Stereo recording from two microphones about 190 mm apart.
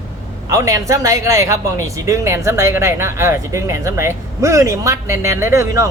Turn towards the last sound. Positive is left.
turn(degrees=-15)  # may be behind; listen again after turning